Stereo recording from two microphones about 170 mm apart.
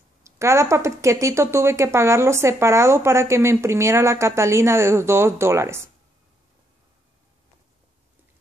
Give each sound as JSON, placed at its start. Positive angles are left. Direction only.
{"t": 0.2, "sound": "speech", "side_deg": -15}